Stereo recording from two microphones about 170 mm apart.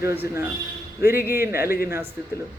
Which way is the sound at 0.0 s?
15° right (ahead or behind).